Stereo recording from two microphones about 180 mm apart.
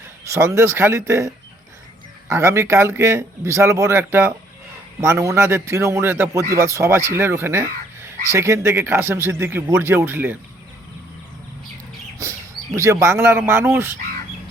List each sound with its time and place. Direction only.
0.3 s a man's voice: 15° right (ahead or behind)
2.3 s a man's voice: 15° right (ahead or behind)
12.7 s a man's voice: 15° right (ahead or behind)